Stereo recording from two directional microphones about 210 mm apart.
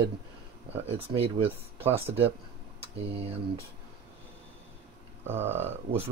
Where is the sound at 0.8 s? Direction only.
30° right (ahead or behind).